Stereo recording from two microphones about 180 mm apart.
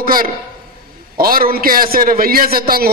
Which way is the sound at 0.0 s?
55° right (ahead or behind).